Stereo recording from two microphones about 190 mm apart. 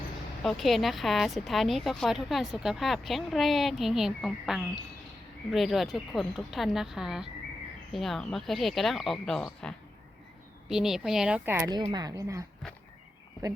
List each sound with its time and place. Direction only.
0.4 s speech: centre (ahead or behind)
11.8 s speech: 25° right (ahead or behind)